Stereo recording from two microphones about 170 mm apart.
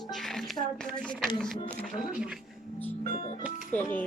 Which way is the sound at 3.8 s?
10° left (ahead or behind).